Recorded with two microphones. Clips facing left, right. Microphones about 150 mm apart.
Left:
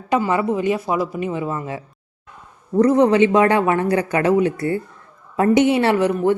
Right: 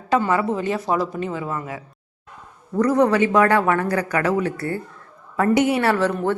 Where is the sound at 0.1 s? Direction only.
15° left (ahead or behind).